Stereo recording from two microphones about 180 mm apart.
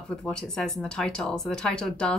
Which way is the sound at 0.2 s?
5° left (ahead or behind).